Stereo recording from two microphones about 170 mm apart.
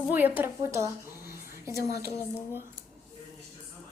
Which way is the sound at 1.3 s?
60° left (ahead or behind).